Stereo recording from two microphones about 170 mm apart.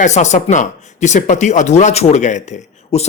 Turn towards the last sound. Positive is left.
turn(degrees=40)  # may be behind; listen again after turning